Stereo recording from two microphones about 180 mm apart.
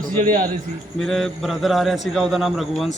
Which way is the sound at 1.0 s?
Centre (ahead or behind).